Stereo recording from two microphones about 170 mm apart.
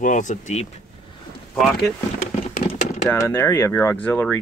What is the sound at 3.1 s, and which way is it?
Speech, 15° left (ahead or behind).